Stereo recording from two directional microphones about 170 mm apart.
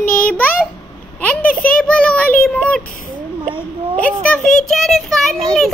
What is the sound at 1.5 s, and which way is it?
Speech, 55° left (ahead or behind).